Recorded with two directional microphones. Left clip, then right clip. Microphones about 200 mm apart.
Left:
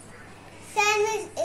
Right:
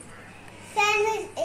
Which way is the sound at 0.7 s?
5° left (ahead or behind).